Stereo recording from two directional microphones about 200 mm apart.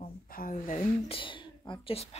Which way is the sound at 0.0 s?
45° left (ahead or behind).